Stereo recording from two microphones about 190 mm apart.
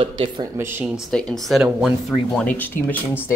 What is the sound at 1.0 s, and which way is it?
Speech, 5° left (ahead or behind).